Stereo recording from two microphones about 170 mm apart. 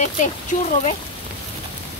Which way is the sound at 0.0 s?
50° left (ahead or behind).